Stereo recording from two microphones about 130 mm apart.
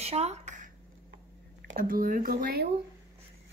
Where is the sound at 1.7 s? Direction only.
90° right.